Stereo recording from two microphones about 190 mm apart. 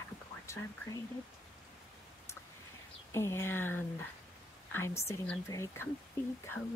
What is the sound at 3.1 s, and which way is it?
Speech, 15° left (ahead or behind).